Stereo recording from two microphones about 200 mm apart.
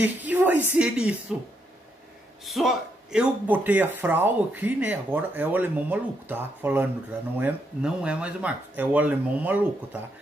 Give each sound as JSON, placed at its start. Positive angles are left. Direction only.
{"t": 0.0, "sound": "speech", "side_deg": -10}
{"t": 2.4, "sound": "speech", "side_deg": 0}